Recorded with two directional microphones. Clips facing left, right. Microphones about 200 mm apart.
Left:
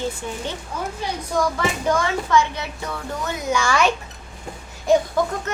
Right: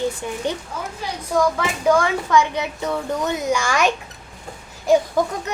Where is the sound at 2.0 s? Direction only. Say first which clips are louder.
Right 1 dB; 15° right (ahead or behind).